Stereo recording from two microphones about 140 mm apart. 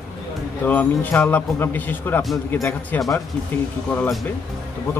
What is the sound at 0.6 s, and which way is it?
Speech, 10° left (ahead or behind).